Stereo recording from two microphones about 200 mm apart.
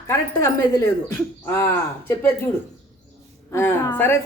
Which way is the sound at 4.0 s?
10° left (ahead or behind).